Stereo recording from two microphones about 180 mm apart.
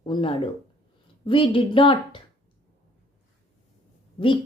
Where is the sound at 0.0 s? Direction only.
30° left (ahead or behind).